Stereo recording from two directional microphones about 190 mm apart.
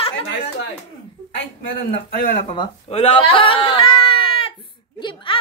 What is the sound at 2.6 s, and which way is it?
Speech, 30° left (ahead or behind).